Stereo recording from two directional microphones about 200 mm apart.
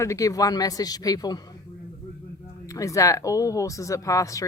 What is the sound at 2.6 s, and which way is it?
Speech, 15° left (ahead or behind).